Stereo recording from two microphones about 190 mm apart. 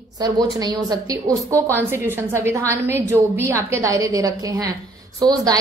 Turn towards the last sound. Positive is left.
turn(degrees=-20)  # may be behind; listen again after turning